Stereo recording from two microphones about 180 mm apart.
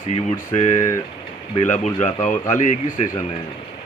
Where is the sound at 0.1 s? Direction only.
40° left (ahead or behind).